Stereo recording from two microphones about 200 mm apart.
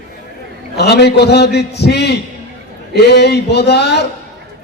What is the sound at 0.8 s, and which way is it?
A man's voice, 55° left (ahead or behind).